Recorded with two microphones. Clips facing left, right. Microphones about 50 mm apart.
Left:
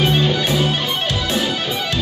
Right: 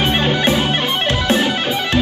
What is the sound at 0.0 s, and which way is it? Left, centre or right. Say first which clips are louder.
Music: right 2 dB; right.